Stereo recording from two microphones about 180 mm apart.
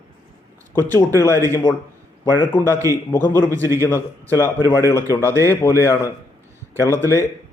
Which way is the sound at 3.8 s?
10° left (ahead or behind).